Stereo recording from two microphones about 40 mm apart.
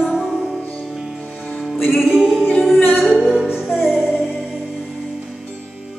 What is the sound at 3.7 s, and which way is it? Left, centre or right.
Music, centre.